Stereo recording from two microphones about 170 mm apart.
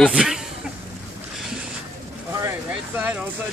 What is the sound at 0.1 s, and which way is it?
Speech, 5° right (ahead or behind).